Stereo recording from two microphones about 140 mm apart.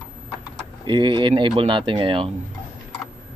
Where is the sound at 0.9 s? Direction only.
35° right (ahead or behind).